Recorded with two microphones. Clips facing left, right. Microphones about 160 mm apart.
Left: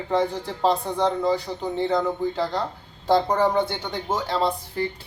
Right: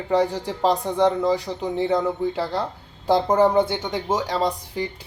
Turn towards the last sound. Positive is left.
turn(degrees=-15)  # may be behind; listen again after turning